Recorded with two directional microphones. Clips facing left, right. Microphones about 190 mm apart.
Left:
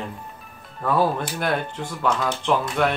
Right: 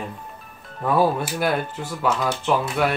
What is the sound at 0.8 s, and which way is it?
Speech, 10° right (ahead or behind).